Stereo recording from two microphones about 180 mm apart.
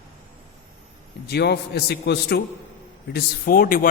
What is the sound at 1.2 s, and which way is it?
A man's voice, 65° left (ahead or behind).